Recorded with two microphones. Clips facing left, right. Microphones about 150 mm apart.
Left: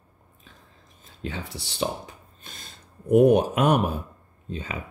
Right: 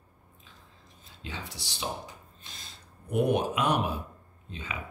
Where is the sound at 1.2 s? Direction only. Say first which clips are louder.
Left 7 dB; 55° left (ahead or behind).